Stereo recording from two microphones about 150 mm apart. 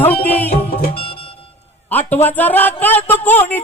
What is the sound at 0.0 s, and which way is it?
Speech, 10° left (ahead or behind).